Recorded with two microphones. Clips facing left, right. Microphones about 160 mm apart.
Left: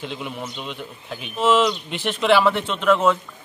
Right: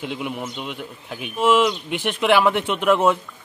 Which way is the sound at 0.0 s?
10° right (ahead or behind).